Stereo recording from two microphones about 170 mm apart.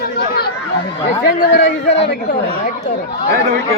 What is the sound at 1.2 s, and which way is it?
Speech, 90° left.